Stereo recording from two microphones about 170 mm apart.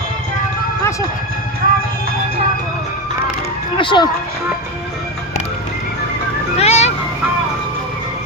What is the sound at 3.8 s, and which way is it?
Speech, 30° left (ahead or behind).